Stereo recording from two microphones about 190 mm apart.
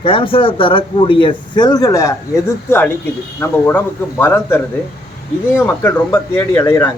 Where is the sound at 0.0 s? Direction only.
30° left (ahead or behind).